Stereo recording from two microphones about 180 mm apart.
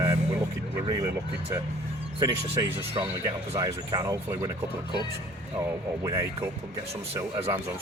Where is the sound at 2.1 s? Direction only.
25° right (ahead or behind).